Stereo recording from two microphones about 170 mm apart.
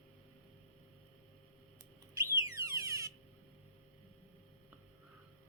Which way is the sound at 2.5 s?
20° right (ahead or behind).